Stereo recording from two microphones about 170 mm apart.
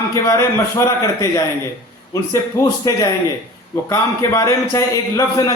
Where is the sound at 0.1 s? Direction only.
15° left (ahead or behind).